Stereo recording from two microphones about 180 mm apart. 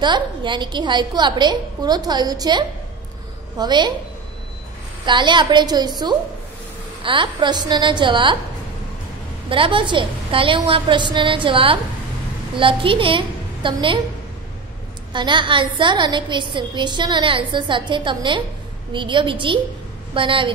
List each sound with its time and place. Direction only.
0.0 s a woman's voice: 25° right (ahead or behind)
5.0 s a woman's voice: 25° right (ahead or behind)
9.5 s a woman's voice: 30° right (ahead or behind)
15.1 s a woman's voice: 25° right (ahead or behind)